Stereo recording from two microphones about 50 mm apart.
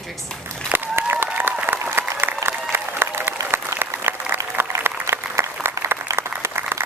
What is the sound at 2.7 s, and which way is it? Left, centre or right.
Applause, right.